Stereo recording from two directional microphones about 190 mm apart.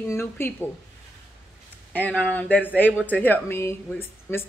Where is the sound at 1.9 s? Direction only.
10° left (ahead or behind).